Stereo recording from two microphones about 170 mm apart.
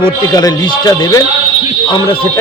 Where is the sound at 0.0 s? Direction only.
20° left (ahead or behind).